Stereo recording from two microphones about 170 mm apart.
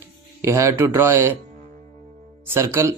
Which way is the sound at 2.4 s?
15° right (ahead or behind).